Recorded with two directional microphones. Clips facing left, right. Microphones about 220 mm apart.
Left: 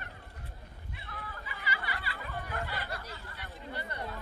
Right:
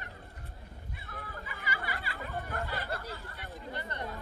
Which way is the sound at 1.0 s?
45° right (ahead or behind).